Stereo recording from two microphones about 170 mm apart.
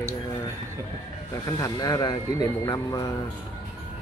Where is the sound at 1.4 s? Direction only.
20° left (ahead or behind).